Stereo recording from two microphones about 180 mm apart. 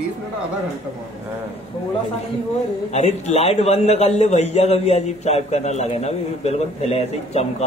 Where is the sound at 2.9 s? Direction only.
40° left (ahead or behind).